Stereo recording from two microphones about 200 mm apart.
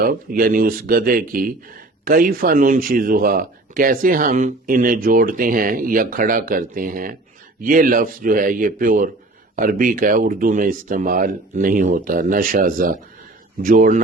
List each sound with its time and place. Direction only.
0.0 s speech: 45° right (ahead or behind)